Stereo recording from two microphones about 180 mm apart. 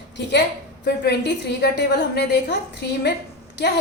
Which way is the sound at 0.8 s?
65° left (ahead or behind).